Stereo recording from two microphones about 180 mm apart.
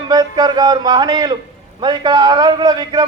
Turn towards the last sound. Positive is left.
turn(degrees=-25)  # may be behind; listen again after turning